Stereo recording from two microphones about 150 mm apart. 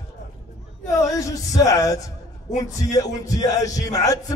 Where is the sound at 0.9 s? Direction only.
20° left (ahead or behind).